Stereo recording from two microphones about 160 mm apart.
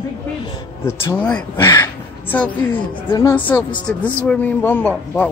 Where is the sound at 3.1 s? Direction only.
20° left (ahead or behind).